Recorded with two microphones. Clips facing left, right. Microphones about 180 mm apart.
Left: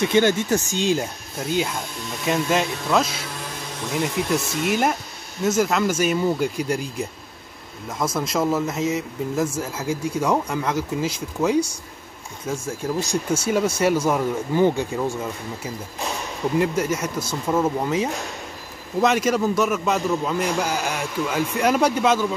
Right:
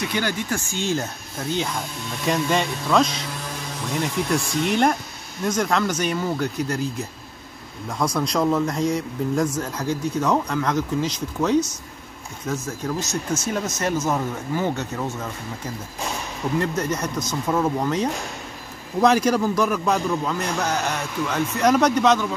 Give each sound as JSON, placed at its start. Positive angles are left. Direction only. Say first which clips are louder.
{"t": 0.1, "sound": "speech", "louder": "left 7 dB", "side_deg": 25}